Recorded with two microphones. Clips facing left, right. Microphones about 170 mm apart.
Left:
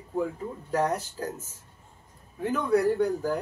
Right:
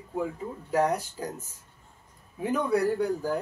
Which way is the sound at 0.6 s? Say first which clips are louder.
Right 1 dB; 10° right (ahead or behind).